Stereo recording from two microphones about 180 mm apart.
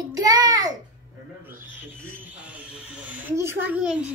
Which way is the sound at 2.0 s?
5° right (ahead or behind).